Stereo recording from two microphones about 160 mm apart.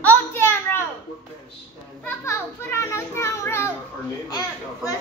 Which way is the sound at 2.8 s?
15° left (ahead or behind).